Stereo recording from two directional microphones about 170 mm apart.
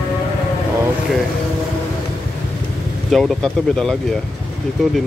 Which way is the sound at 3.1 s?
Centre (ahead or behind).